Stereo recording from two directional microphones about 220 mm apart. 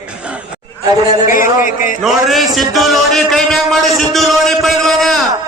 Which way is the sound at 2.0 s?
Centre (ahead or behind).